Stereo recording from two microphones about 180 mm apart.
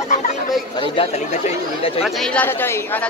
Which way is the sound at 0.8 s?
35° left (ahead or behind).